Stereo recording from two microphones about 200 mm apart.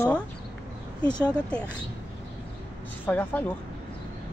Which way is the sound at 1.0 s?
20° left (ahead or behind).